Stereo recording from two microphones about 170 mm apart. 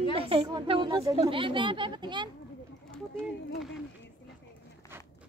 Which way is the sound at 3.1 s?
5° left (ahead or behind).